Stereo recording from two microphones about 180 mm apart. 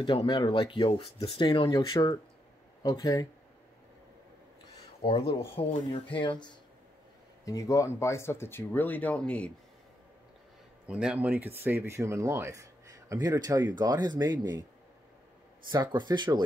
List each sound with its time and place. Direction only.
0.0 s speech: 25° left (ahead or behind)
5.6 s speech: 30° left (ahead or behind); by 9.5 s 5° left (ahead or behind)
10.9 s speech: 5° right (ahead or behind); by 14.6 s 25° right (ahead or behind)
15.7 s speech: 25° right (ahead or behind)